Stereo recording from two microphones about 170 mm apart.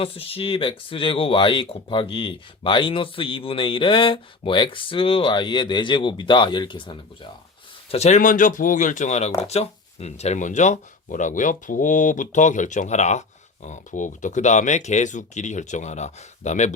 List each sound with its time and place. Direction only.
0.0 s speech: 35° left (ahead or behind)